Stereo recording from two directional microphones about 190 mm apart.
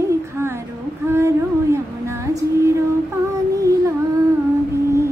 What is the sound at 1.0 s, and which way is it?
Humming, 15° right (ahead or behind).